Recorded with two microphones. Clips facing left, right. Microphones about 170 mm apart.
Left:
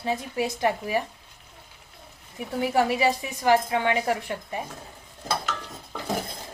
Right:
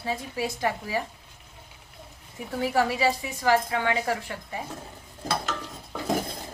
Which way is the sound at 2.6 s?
20° left (ahead or behind).